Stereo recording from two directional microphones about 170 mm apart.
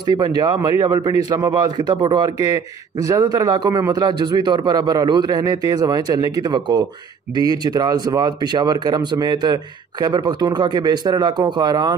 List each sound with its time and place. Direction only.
0.2 s speech: 20° right (ahead or behind)